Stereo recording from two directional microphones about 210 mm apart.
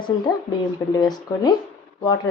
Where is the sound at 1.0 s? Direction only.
20° left (ahead or behind).